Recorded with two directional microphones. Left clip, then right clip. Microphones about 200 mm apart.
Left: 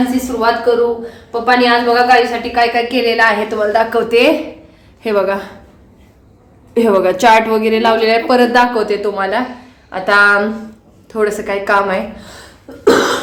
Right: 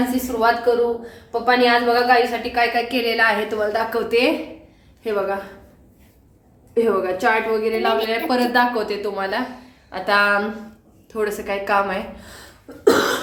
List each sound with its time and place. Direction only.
0.1 s a woman's voice: centre (ahead or behind)
5.0 s a woman's voice: 45° left (ahead or behind)
6.7 s a woman's voice: 50° left (ahead or behind)
8.1 s a woman's voice: 25° left (ahead or behind)